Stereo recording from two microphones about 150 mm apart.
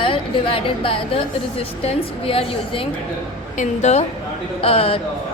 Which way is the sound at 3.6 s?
50° left (ahead or behind).